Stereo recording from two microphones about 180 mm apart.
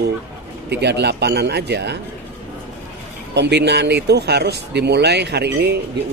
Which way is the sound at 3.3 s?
70° right (ahead or behind).